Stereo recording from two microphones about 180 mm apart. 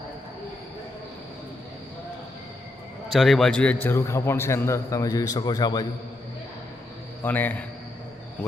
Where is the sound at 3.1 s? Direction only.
Centre (ahead or behind); by 5.8 s 20° left (ahead or behind).